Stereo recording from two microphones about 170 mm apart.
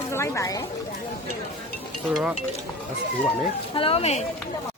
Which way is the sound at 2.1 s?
5° right (ahead or behind).